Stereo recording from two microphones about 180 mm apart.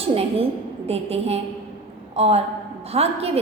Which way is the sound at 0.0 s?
35° right (ahead or behind).